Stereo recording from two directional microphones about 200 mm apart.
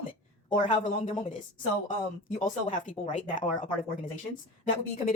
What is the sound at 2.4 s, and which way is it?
Speech, 40° left (ahead or behind).